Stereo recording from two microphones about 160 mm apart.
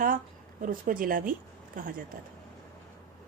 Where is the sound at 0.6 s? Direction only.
60° right (ahead or behind).